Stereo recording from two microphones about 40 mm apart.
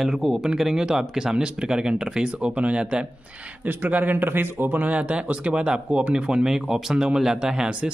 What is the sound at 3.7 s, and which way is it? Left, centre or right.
Speech, right.